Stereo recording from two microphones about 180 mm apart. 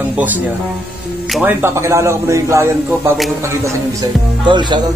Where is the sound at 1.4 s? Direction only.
15° right (ahead or behind).